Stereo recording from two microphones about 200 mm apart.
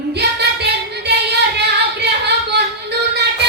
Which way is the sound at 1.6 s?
55° right (ahead or behind).